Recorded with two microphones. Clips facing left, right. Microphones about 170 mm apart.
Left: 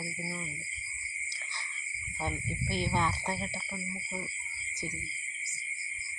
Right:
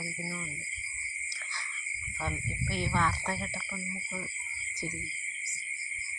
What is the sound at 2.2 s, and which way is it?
Speech, 30° left (ahead or behind).